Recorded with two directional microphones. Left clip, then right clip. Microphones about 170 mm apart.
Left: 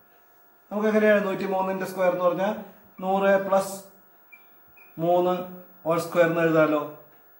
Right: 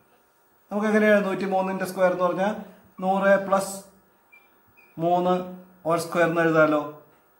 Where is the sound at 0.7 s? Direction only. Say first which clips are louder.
Even; 25° right (ahead or behind).